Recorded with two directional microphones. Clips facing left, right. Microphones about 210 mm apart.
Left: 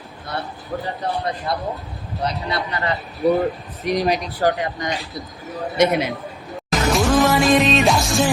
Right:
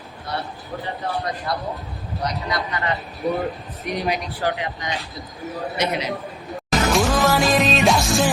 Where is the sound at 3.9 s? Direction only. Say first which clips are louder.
Left 5 dB; 40° left (ahead or behind); by 6.1 s 55° left (ahead or behind).